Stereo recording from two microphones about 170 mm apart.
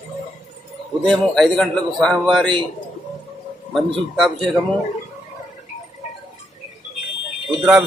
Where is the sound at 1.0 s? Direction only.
Centre (ahead or behind).